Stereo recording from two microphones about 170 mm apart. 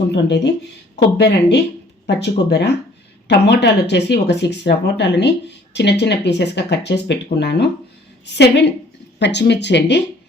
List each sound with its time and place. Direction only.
0.1 s a woman's voice: 90° left